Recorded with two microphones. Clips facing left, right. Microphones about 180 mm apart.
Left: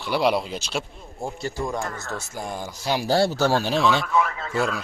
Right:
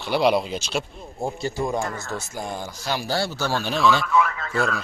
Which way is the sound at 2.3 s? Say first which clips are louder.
Right 1 dB; 5° left (ahead or behind).